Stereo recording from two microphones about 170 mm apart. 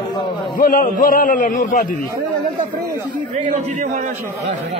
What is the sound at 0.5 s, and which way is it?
Speech, 55° left (ahead or behind).